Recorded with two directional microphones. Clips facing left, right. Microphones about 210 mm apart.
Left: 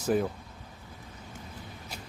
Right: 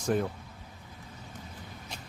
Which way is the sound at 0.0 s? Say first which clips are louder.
Left 2 dB; 5° left (ahead or behind).